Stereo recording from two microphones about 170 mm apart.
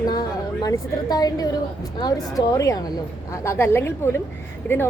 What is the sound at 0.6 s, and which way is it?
A woman's voice, 25° left (ahead or behind).